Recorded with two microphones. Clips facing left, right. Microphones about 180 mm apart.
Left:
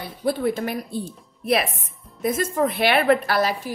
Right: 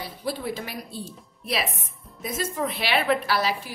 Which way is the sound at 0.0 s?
55° left (ahead or behind).